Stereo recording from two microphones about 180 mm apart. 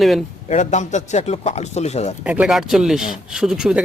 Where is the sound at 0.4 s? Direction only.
40° left (ahead or behind).